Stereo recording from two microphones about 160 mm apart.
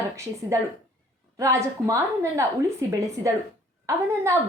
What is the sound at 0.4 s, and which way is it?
A woman's voice, 20° right (ahead or behind).